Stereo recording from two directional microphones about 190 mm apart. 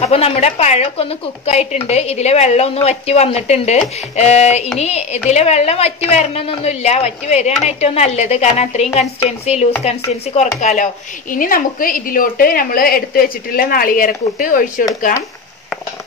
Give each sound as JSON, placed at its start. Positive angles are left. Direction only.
{"t": 0.0, "sound": "a woman's voice", "side_deg": 35}